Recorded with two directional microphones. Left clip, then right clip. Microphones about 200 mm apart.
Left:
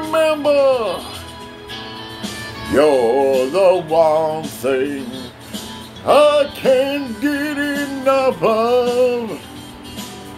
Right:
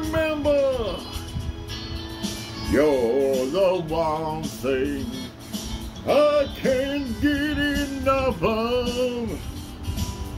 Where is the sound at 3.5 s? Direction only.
25° right (ahead or behind).